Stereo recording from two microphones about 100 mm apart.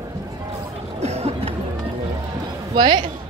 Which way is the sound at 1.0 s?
90° right.